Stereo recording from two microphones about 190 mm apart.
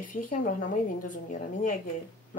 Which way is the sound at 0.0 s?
45° left (ahead or behind).